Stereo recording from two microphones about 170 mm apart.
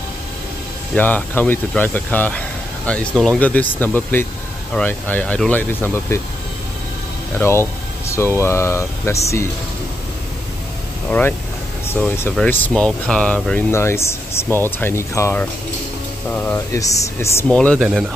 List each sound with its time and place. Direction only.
0.9 s speech: 10° left (ahead or behind)
7.3 s speech: 15° left (ahead or behind)
11.1 s speech: 10° left (ahead or behind)
16.5 s speech: 20° left (ahead or behind)
17.5 s speech: 5° left (ahead or behind)